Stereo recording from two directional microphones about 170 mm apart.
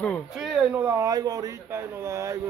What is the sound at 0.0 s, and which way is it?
Speech, centre (ahead or behind).